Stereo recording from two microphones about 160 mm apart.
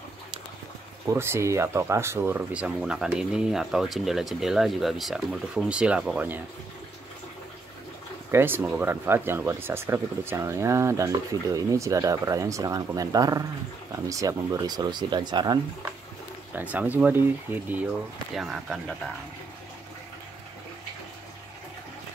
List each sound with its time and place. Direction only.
1.0 s speech: 15° right (ahead or behind)
8.3 s speech: 15° right (ahead or behind)
16.5 s speech: 10° right (ahead or behind)
18.3 s speech: centre (ahead or behind)